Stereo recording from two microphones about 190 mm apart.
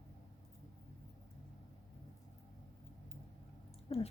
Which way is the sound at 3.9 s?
30° left (ahead or behind).